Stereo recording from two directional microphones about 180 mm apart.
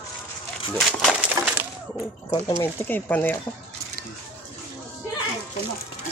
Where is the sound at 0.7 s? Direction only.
Centre (ahead or behind).